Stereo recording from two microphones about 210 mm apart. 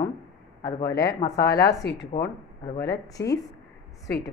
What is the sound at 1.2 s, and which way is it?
Speech, 15° left (ahead or behind).